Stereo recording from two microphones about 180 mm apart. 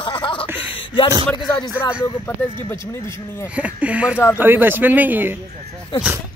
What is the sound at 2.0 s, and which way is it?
Speech, 15° left (ahead or behind).